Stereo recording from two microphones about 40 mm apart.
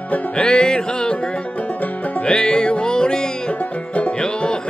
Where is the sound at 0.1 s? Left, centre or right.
Left.